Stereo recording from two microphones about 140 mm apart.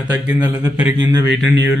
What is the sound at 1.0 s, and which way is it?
Speech, 30° right (ahead or behind).